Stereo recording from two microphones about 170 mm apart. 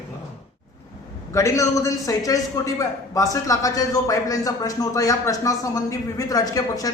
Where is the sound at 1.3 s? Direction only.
15° left (ahead or behind).